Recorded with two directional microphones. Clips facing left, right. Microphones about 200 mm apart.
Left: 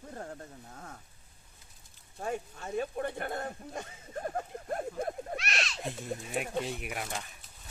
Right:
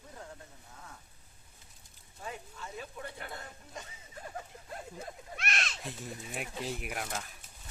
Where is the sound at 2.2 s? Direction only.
50° left (ahead or behind).